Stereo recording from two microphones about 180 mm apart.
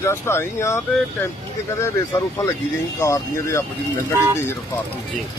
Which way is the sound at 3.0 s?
15° left (ahead or behind).